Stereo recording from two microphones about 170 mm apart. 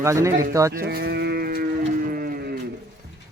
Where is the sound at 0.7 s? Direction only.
65° right (ahead or behind).